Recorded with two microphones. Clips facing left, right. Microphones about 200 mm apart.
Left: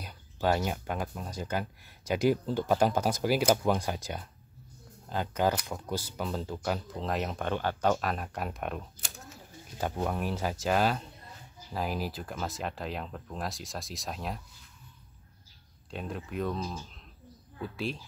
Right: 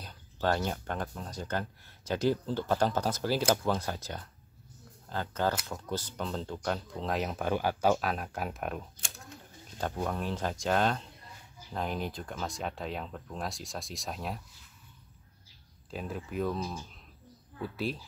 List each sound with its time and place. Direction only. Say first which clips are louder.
0.0 s speech: left 1 dB; 10° left (ahead or behind)
10.0 s speech: left 2 dB; 10° left (ahead or behind)
15.9 s speech: even; centre (ahead or behind)